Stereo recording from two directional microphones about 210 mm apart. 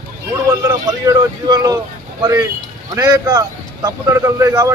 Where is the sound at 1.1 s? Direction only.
20° right (ahead or behind).